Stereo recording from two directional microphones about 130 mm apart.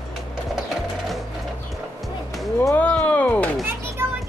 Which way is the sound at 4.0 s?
20° right (ahead or behind).